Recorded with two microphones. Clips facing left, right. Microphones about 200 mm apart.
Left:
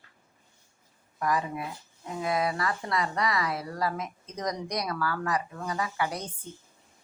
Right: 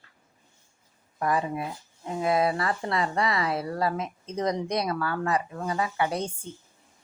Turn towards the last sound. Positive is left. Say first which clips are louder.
# right 4 dB
turn(degrees=-25)  # may be behind; listen again after turning